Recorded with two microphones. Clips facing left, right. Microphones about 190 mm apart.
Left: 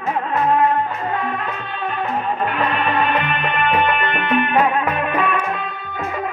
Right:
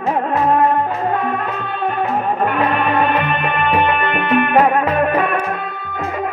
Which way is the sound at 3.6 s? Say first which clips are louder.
Right 2 dB; 40° right (ahead or behind).